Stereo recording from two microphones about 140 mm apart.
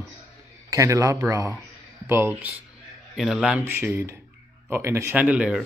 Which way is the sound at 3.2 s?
5° right (ahead or behind).